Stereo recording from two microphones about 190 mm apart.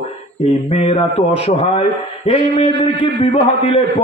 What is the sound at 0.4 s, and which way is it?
A man's voice, 30° left (ahead or behind).